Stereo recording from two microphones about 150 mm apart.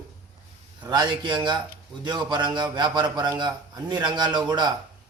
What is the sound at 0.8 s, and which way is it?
Speech, 30° right (ahead or behind).